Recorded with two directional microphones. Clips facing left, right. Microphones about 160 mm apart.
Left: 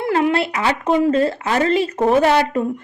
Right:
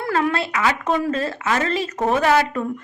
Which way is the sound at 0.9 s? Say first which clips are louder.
Left 9 dB; 20° left (ahead or behind).